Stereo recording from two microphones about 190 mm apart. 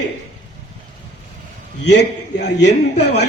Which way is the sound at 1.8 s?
65° left (ahead or behind).